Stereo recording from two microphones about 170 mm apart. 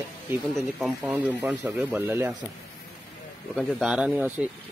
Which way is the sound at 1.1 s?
10° right (ahead or behind).